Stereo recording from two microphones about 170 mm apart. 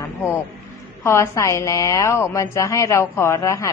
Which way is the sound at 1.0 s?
15° left (ahead or behind).